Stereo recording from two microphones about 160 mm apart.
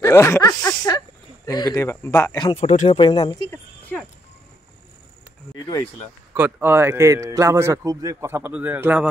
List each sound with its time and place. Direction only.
0.0 s speech: 15° left (ahead or behind)
2.3 s speech: 30° left (ahead or behind)
2.6 s speech: 45° left (ahead or behind)
3.0 s speech: 35° left (ahead or behind)
6.3 s a man's voice: 15° right (ahead or behind)